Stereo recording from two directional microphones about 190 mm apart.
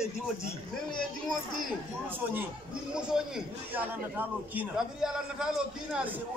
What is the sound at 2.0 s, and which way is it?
A man's voice, 10° right (ahead or behind).